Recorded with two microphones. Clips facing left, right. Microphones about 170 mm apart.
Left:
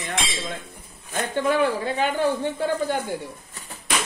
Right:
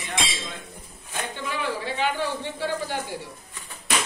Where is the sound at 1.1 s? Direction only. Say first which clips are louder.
Left 9 dB; 50° left (ahead or behind).